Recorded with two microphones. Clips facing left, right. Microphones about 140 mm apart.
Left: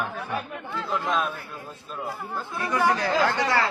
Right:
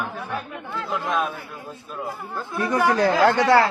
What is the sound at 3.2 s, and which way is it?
Speech, 70° right (ahead or behind).